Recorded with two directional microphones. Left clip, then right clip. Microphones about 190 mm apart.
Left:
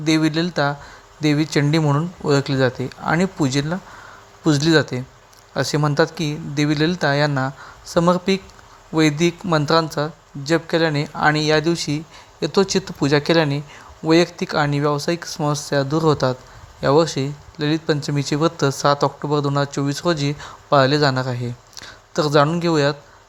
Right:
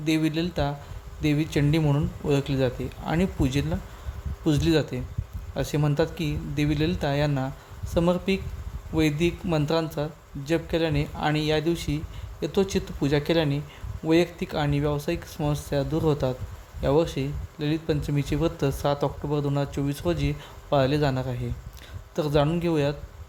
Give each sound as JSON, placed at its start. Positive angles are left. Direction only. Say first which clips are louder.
{"t": 0.1, "sound": "speech", "louder": "left 7 dB", "side_deg": 10}